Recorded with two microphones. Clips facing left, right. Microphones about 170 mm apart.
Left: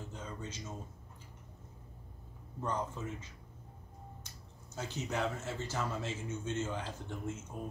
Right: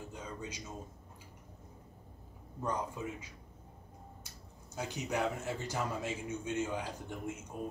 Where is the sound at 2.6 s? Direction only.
10° right (ahead or behind).